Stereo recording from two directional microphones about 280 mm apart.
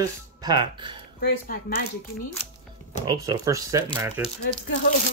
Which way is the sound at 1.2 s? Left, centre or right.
Left.